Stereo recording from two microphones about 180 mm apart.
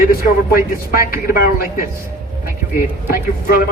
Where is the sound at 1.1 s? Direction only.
50° left (ahead or behind).